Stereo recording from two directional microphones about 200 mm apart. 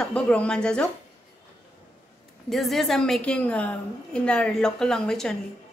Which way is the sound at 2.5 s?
Centre (ahead or behind).